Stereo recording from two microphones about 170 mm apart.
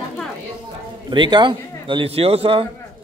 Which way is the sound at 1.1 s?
25° right (ahead or behind).